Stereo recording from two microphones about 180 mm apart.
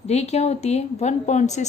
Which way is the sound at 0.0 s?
35° left (ahead or behind).